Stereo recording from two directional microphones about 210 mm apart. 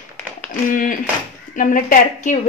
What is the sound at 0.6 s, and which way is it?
A woman's voice, 40° left (ahead or behind).